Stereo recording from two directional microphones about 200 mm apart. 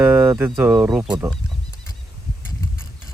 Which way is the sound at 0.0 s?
10° right (ahead or behind).